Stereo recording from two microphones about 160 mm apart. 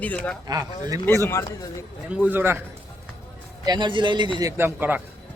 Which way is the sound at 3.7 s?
30° right (ahead or behind).